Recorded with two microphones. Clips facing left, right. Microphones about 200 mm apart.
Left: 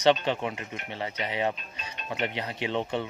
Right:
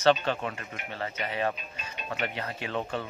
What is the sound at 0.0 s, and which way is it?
Speech, 20° left (ahead or behind).